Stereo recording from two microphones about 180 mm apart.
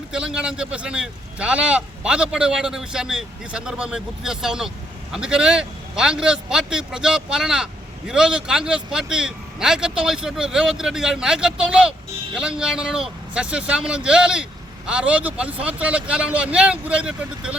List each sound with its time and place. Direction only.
0.1 s speech: 5° right (ahead or behind)